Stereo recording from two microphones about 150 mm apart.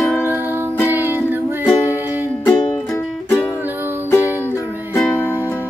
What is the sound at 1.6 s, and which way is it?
Music, 20° left (ahead or behind).